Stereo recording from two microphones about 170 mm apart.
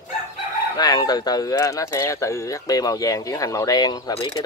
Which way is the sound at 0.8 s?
25° left (ahead or behind).